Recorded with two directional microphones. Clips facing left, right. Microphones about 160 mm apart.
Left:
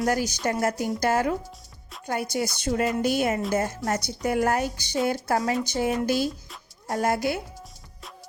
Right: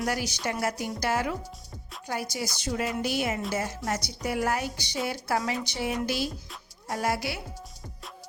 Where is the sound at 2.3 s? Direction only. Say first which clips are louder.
Left 5 dB; 55° left (ahead or behind).